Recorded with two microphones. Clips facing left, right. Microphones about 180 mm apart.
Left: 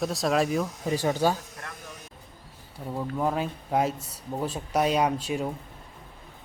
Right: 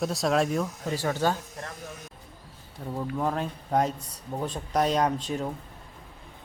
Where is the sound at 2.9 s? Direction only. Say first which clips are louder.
Left 1 dB; 5° left (ahead or behind).